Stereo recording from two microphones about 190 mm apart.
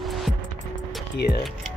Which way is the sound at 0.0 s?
Centre (ahead or behind).